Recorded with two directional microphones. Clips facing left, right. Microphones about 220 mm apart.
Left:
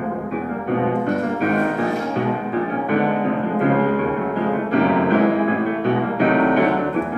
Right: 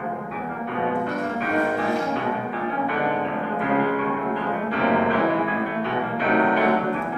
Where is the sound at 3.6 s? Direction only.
45° left (ahead or behind).